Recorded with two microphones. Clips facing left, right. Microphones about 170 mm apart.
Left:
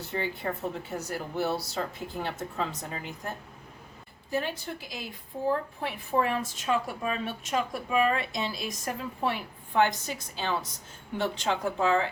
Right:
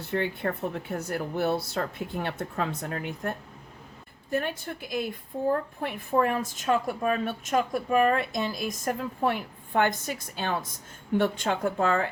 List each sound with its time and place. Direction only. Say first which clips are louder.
0.0 s a woman's voice: right 4 dB; 60° right (ahead or behind)